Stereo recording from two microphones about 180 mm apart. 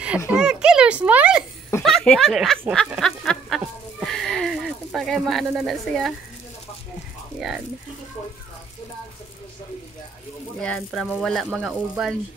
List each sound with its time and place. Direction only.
0.3 s a sound: 5° right (ahead or behind)
1.8 s speech: centre (ahead or behind)
2.7 s duck: centre (ahead or behind)
7.3 s speech: centre (ahead or behind)
10.6 s speech: 5° left (ahead or behind)